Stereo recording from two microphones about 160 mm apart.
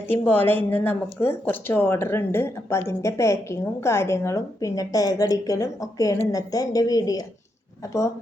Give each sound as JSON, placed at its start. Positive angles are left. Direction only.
{"t": 0.1, "sound": "speech", "side_deg": 10}